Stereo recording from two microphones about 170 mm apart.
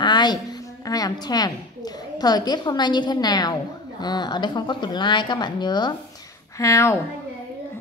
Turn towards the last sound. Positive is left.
turn(degrees=15)  # may be behind; listen again after turning